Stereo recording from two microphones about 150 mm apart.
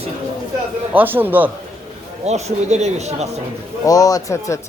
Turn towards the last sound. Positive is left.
turn(degrees=20)  # may be behind; listen again after turning